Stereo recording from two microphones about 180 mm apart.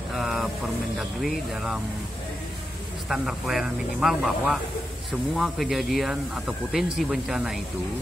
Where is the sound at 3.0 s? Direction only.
Centre (ahead or behind).